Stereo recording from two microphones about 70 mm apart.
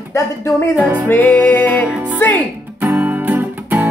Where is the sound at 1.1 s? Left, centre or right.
Left.